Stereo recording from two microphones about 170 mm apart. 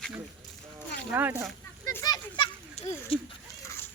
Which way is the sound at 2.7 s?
35° left (ahead or behind).